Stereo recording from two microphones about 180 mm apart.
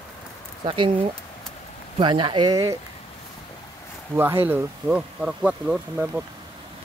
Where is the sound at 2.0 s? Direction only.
30° right (ahead or behind).